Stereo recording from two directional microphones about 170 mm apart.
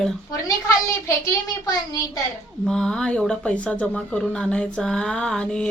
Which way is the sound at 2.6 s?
5° left (ahead or behind).